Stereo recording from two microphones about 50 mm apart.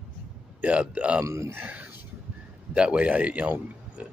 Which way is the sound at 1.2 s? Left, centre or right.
Right.